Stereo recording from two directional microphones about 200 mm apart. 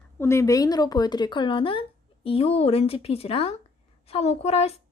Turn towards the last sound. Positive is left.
turn(degrees=30)  # may be behind; listen again after turning